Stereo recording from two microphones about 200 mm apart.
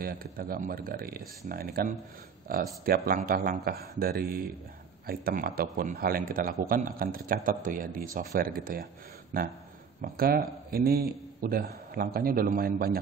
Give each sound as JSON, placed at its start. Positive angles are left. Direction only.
{"t": 0.0, "sound": "a man's voice", "side_deg": -45}
{"t": 10.0, "sound": "a man's voice", "side_deg": -50}